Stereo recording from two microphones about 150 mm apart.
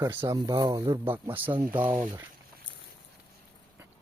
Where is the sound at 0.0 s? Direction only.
15° right (ahead or behind).